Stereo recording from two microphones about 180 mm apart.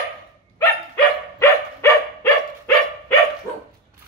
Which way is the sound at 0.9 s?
10° left (ahead or behind).